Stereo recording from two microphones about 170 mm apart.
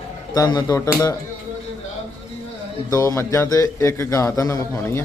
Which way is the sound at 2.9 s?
20° left (ahead or behind).